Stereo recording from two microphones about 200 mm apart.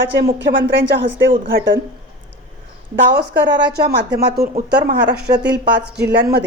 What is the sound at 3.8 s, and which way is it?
Speech, 55° right (ahead or behind).